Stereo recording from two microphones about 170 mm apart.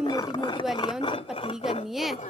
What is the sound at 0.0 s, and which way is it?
Speech, 25° left (ahead or behind).